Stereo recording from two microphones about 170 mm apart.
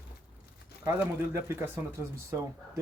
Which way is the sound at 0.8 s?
15° right (ahead or behind).